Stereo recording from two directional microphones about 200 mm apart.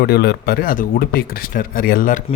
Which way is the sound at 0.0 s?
50° left (ahead or behind).